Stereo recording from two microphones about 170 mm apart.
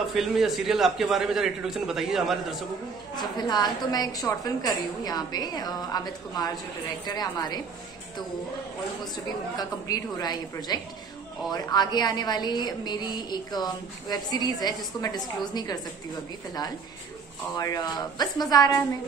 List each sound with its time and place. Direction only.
0.1 s a man's voice: centre (ahead or behind)
3.2 s a woman's voice: 25° left (ahead or behind)
9.1 s a woman's voice: 20° left (ahead or behind)
17.6 s a woman's voice: 25° left (ahead or behind)